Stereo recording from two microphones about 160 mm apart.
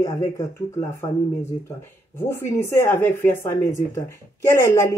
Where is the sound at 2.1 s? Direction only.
15° left (ahead or behind).